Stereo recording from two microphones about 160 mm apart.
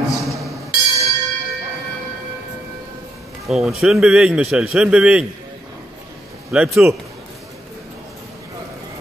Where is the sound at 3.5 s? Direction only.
Centre (ahead or behind).